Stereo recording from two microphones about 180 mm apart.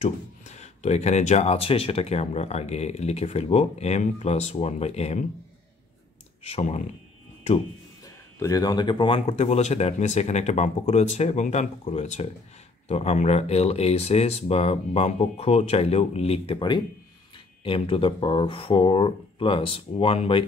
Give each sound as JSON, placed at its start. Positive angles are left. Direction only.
{"t": 0.0, "sound": "speech", "side_deg": 40}
{"t": 6.4, "sound": "speech", "side_deg": 35}
{"t": 8.4, "sound": "speech", "side_deg": 20}